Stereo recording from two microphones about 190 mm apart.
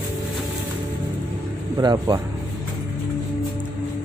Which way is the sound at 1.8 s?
20° right (ahead or behind).